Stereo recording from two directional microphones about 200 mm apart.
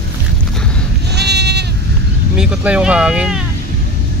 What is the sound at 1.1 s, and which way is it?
Sheep, 55° right (ahead or behind).